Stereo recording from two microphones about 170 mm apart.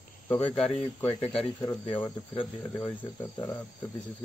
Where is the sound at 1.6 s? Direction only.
25° left (ahead or behind).